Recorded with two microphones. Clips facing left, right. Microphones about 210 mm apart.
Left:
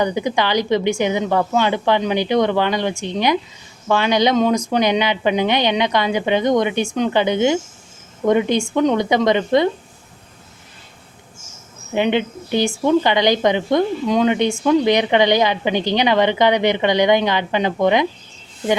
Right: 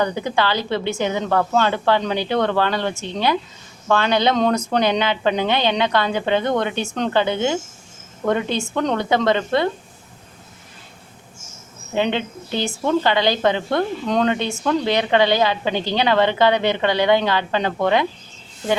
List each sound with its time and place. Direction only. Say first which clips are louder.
0.0 s a woman's voice: left 2 dB; 15° left (ahead or behind)
11.9 s a woman's voice: left 3 dB; 15° left (ahead or behind)